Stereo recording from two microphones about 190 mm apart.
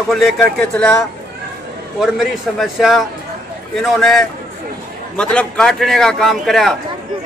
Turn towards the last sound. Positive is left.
turn(degrees=0)  # may be behind; listen again after turning